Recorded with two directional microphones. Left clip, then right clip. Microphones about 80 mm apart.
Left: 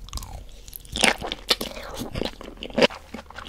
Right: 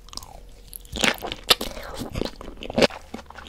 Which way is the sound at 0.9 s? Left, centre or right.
Right.